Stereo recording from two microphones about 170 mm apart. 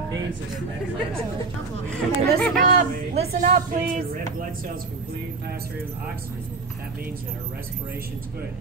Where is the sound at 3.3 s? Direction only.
50° right (ahead or behind).